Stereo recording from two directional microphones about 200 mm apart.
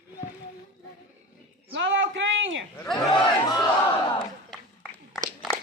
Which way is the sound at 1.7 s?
70° right (ahead or behind).